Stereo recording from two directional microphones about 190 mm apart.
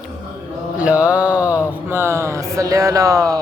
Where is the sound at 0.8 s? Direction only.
5° right (ahead or behind).